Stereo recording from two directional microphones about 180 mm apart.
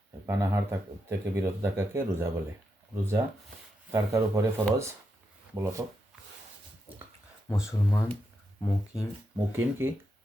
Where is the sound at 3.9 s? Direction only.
15° right (ahead or behind).